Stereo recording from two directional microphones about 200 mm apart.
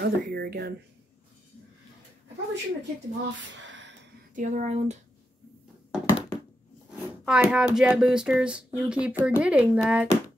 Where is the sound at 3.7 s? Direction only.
65° right (ahead or behind).